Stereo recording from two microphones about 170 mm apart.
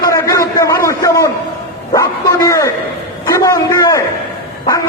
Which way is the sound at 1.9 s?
20° left (ahead or behind).